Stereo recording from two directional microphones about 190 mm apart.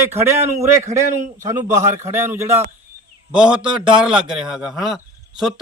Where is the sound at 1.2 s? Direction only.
40° right (ahead or behind).